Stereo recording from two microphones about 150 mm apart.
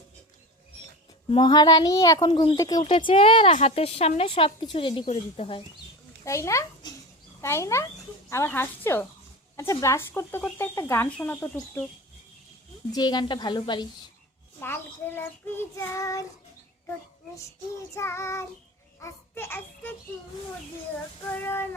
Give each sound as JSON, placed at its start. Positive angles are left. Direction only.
{"t": 1.3, "sound": "speech", "side_deg": 30}
{"t": 6.2, "sound": "a child's voice", "side_deg": 20}
{"t": 12.9, "sound": "speech", "side_deg": 30}
{"t": 14.6, "sound": "speech", "side_deg": 15}
{"t": 17.9, "sound": "a child's voice", "side_deg": 20}
{"t": 21.2, "sound": "speech", "side_deg": 15}